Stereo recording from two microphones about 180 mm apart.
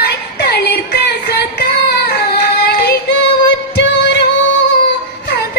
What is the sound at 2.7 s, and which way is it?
Yodeling, 65° left (ahead or behind).